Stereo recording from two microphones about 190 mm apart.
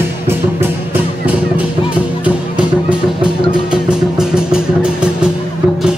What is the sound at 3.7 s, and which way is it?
Music, 5° right (ahead or behind).